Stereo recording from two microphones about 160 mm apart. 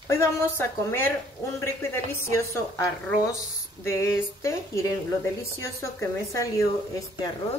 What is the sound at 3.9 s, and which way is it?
A woman's voice, 20° left (ahead or behind).